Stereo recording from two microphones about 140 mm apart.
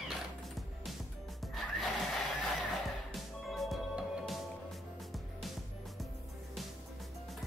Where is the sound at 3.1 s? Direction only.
Centre (ahead or behind).